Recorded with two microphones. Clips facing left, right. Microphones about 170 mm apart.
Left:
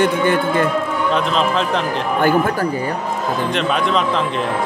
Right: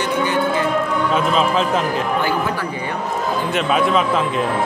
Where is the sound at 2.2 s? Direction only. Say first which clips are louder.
Left 4 dB; 50° left (ahead or behind).